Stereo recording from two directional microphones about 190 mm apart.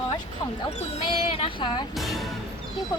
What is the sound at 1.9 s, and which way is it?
Speech, centre (ahead or behind).